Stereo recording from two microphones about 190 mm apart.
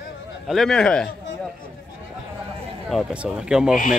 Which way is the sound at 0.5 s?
Centre (ahead or behind).